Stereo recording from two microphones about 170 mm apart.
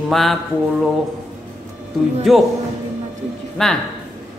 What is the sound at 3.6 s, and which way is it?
Speech, 5° left (ahead or behind).